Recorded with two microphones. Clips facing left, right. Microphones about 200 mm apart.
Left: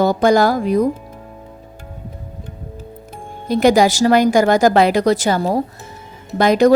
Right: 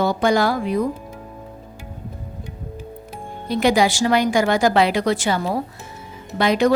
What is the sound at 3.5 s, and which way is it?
Speech, 45° left (ahead or behind).